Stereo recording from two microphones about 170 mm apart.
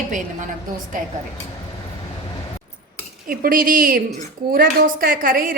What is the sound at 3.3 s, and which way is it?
A woman's voice, 55° right (ahead or behind).